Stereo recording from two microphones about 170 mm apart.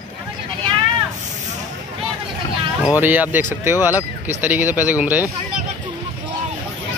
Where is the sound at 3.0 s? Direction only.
10° right (ahead or behind).